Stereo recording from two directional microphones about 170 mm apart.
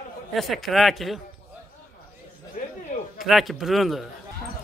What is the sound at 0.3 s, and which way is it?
Speech, centre (ahead or behind).